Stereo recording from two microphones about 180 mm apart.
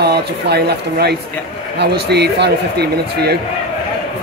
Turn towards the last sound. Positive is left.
turn(degrees=-65)  # may be behind; listen again after turning